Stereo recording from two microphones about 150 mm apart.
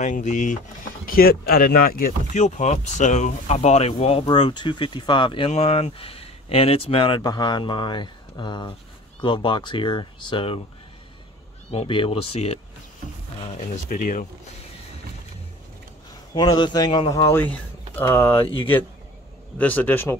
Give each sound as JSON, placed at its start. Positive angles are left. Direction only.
{"t": 0.0, "sound": "speech", "side_deg": 55}
{"t": 1.0, "sound": "speech", "side_deg": 85}
{"t": 11.7, "sound": "speech", "side_deg": 40}
{"t": 13.6, "sound": "speech", "side_deg": 65}
{"t": 16.3, "sound": "speech", "side_deg": 30}
{"t": 17.1, "sound": "speech", "side_deg": 20}
{"t": 19.6, "sound": "speech", "side_deg": 10}